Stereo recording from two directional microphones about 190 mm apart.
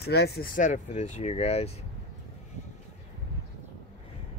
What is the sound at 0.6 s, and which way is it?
Speech, 40° left (ahead or behind).